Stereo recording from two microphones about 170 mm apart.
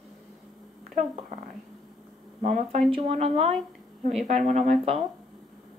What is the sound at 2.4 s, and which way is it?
Speech, 40° right (ahead or behind).